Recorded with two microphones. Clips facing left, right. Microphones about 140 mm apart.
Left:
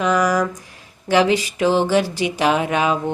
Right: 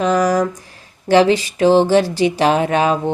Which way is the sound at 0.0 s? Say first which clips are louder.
Right 3 dB; 35° right (ahead or behind).